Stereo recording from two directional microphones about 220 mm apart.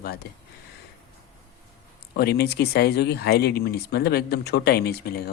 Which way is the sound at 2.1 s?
45° left (ahead or behind).